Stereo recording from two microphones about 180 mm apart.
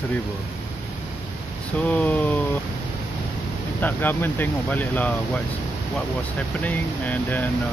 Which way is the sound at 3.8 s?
10° left (ahead or behind).